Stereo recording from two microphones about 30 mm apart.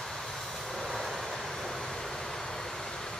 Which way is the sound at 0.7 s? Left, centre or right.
Centre.